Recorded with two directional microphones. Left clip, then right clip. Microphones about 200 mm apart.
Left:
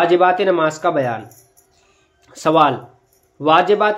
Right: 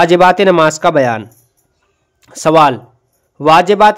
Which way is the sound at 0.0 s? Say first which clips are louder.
Right 6 dB; 40° right (ahead or behind).